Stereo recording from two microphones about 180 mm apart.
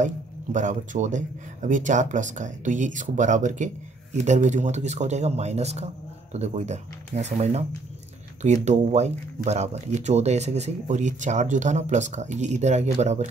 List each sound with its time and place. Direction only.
0.0 s speech: 45° right (ahead or behind)
8.6 s speech: 40° right (ahead or behind)